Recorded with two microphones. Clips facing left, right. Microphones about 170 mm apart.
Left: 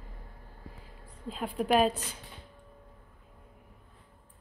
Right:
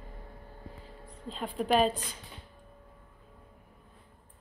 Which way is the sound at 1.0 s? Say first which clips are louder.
Left 2 dB; 5° left (ahead or behind).